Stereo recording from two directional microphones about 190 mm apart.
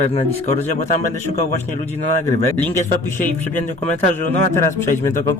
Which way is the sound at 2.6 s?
10° left (ahead or behind).